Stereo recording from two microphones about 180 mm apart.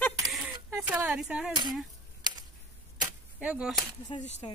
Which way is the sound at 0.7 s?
15° right (ahead or behind).